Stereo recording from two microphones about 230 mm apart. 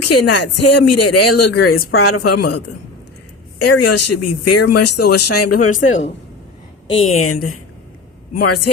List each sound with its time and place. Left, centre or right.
0.0 s speech: left
2.0 s speech: left
3.6 s speech: left
6.9 s a woman's voice: left
8.3 s speech: left